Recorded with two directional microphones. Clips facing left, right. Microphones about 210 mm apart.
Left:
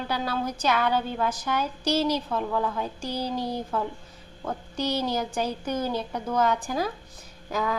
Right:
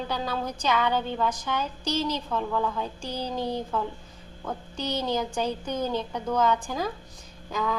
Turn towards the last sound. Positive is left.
turn(degrees=10)  # may be behind; listen again after turning